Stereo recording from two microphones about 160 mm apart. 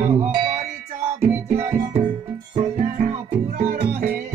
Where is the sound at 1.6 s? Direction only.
15° right (ahead or behind).